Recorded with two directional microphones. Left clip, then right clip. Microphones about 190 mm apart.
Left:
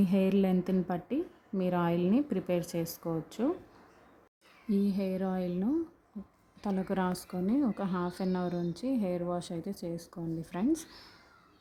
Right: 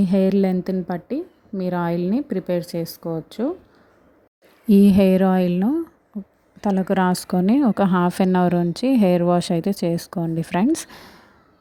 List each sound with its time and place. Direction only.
0.0 s a woman's voice: 30° right (ahead or behind)
4.7 s a woman's voice: 45° right (ahead or behind)